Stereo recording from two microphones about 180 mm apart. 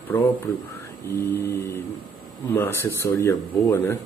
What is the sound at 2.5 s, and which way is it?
A man's voice, 10° left (ahead or behind).